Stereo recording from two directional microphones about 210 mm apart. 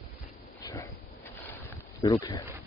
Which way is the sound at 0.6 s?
15° left (ahead or behind).